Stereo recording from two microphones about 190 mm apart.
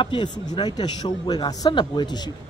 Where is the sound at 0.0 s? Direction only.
25° left (ahead or behind).